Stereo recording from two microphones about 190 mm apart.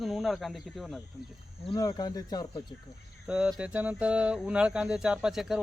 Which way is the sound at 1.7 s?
20° left (ahead or behind).